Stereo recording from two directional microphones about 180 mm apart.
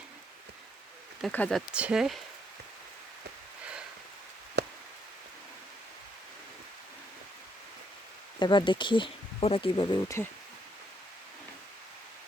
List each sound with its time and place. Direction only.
1.2 s speech: 5° left (ahead or behind)
1.7 s speech: 5° right (ahead or behind)
8.4 s speech: 25° left (ahead or behind)